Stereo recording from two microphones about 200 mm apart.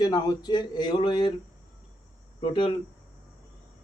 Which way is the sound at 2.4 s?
25° left (ahead or behind).